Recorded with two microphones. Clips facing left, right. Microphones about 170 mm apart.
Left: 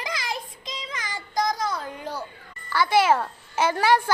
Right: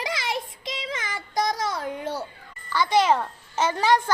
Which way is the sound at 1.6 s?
20° right (ahead or behind).